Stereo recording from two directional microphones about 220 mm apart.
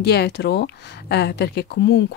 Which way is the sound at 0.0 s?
50° left (ahead or behind).